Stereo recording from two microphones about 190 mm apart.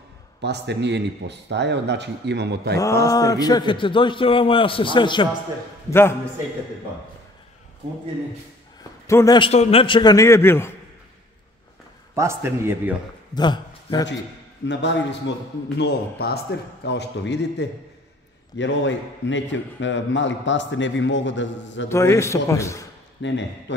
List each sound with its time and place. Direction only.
0.4 s a man's voice: 65° right (ahead or behind)
2.8 s a man's voice: 15° left (ahead or behind)
5.9 s a man's voice: 15° left (ahead or behind)
9.0 s a man's voice: 15° left (ahead or behind)
9.5 s a man's voice: 35° left (ahead or behind); by 10.7 s 15° left (ahead or behind)
12.2 s a man's voice: 15° right (ahead or behind)
13.3 s speech: 25° left (ahead or behind)
14.7 s a man's voice: 65° left (ahead or behind)
21.8 s a man's voice: 15° left (ahead or behind)
23.2 s a man's voice: 75° left (ahead or behind)